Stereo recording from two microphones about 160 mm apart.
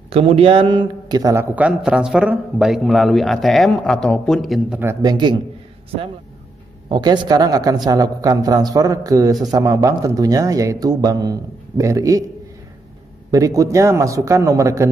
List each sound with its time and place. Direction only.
0.1 s a man's voice: 35° right (ahead or behind); by 4.7 s centre (ahead or behind)
5.0 s a man's voice: 30° right (ahead or behind)
6.9 s a man's voice: 25° right (ahead or behind)
13.3 s a man's voice: 20° right (ahead or behind)